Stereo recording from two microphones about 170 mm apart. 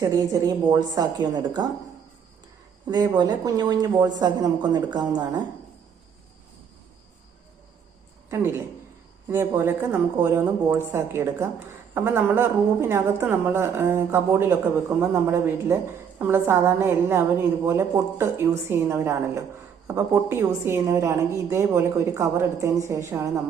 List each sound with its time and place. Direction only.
0.0 s speech: 20° right (ahead or behind)
3.2 s speech: 25° right (ahead or behind)
8.3 s a woman's voice: 15° right (ahead or behind)